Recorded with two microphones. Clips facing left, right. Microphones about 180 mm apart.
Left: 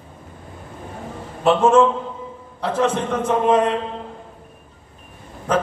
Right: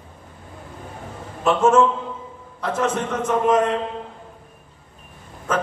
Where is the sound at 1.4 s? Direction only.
30° left (ahead or behind).